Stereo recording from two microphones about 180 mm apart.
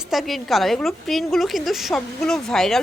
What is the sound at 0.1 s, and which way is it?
A woman's voice, centre (ahead or behind).